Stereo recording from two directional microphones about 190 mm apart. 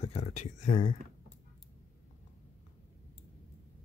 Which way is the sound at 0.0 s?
35° left (ahead or behind).